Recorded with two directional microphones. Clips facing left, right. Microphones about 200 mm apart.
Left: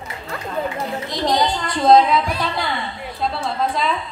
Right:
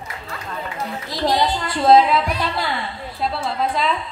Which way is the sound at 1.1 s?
5° right (ahead or behind).